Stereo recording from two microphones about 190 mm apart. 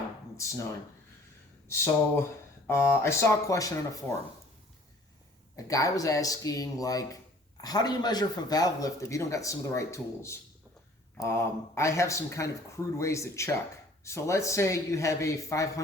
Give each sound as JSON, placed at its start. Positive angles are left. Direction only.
{"t": 0.3, "sound": "speech", "side_deg": 15}
{"t": 1.6, "sound": "speech", "side_deg": 15}
{"t": 5.5, "sound": "a man's voice", "side_deg": 15}